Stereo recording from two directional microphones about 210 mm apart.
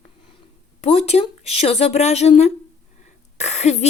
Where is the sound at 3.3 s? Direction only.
35° left (ahead or behind).